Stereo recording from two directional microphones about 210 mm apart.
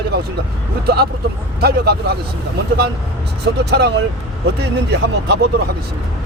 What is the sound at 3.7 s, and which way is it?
Speech, 50° right (ahead or behind).